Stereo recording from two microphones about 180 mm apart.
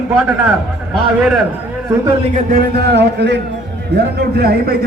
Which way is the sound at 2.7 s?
65° right (ahead or behind).